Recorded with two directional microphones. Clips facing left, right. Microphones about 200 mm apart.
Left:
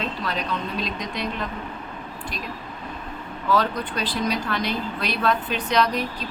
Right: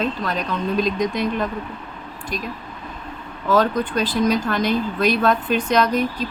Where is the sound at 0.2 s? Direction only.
45° right (ahead or behind).